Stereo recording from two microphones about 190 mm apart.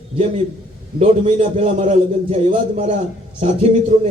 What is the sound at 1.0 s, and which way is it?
A man's voice, 35° right (ahead or behind).